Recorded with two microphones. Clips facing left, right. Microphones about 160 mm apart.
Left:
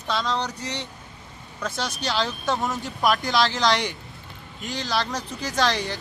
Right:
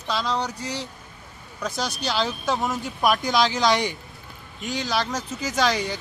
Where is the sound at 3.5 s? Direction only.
20° right (ahead or behind).